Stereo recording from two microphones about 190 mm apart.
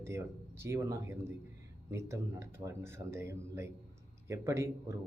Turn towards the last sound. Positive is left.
turn(degrees=-15)  # may be behind; listen again after turning